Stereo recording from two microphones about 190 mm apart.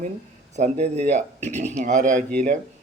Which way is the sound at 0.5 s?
35° right (ahead or behind).